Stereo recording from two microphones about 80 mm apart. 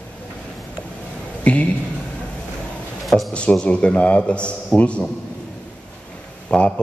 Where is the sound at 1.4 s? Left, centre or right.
Centre.